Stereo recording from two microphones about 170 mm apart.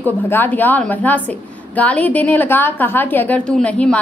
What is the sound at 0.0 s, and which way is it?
A woman's voice, 10° left (ahead or behind).